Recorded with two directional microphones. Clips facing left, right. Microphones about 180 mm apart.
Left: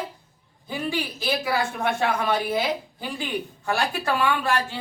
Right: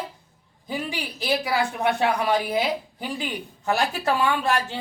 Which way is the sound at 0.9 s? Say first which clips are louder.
Right 1 dB; 15° right (ahead or behind).